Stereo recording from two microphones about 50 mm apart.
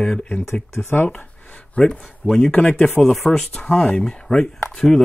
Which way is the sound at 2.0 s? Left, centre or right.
Centre.